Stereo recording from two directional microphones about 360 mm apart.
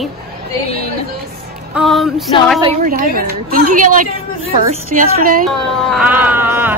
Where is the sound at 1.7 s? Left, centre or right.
Centre.